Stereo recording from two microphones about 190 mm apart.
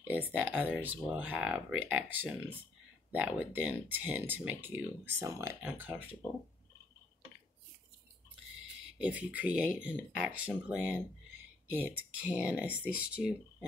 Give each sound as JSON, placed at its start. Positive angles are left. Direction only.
{"t": 0.1, "sound": "speech", "side_deg": -10}
{"t": 8.9, "sound": "speech", "side_deg": -5}
{"t": 12.2, "sound": "speech", "side_deg": -5}